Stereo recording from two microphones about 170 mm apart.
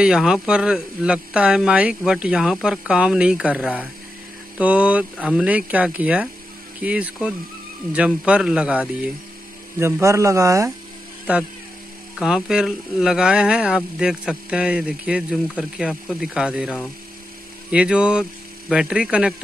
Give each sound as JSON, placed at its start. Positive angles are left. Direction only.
{"t": 0.0, "sound": "speech", "side_deg": -5}
{"t": 12.2, "sound": "speech", "side_deg": -5}